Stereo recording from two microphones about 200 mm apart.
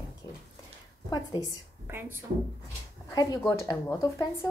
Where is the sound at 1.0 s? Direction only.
20° left (ahead or behind).